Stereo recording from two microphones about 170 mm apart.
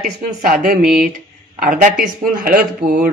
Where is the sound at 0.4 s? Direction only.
55° right (ahead or behind).